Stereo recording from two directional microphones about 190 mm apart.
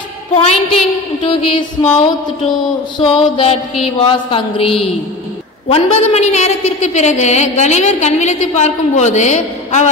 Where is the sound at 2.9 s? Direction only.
30° left (ahead or behind).